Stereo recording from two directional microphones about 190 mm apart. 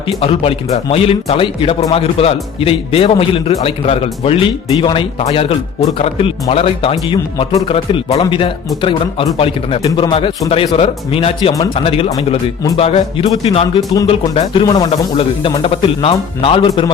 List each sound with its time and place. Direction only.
0.2 s a man's voice: 30° left (ahead or behind)